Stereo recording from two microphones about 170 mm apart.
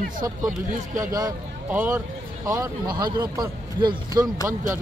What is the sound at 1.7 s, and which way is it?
Speech, 10° right (ahead or behind).